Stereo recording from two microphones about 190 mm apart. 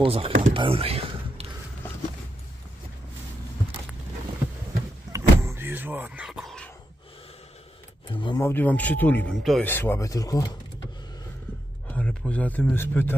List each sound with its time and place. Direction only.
0.0 s speech: 30° right (ahead or behind)
5.1 s power windows: 15° right (ahead or behind); by 6.7 s centre (ahead or behind)
8.1 s a sound: 25° left (ahead or behind)
8.5 s speech: 10° left (ahead or behind)
11.9 s speech: 5° left (ahead or behind)